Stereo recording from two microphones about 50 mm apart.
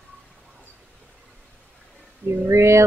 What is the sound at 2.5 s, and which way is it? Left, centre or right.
Speech, right.